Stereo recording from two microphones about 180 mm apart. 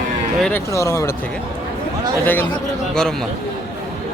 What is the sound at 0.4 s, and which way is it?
Speech, 15° left (ahead or behind).